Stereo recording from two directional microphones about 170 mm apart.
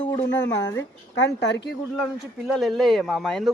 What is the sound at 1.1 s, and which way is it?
Speech, 90° left.